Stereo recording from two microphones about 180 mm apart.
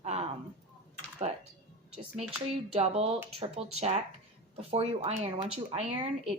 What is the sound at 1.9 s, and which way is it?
Speech, 35° right (ahead or behind).